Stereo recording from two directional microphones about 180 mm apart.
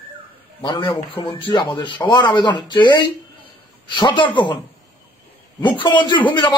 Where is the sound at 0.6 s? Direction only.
25° left (ahead or behind).